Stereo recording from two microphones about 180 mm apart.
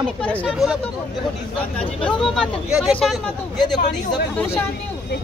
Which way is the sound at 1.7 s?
5° left (ahead or behind).